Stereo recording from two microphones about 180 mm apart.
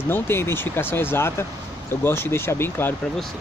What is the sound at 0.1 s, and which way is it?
Speech, 15° left (ahead or behind).